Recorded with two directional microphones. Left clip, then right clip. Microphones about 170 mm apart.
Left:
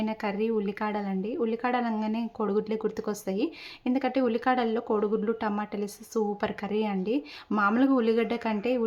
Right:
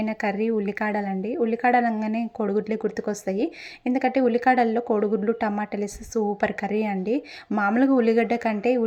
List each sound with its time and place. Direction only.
0.0 s speech: 20° right (ahead or behind)